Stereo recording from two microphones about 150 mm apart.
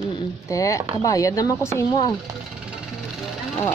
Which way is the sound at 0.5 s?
20° left (ahead or behind).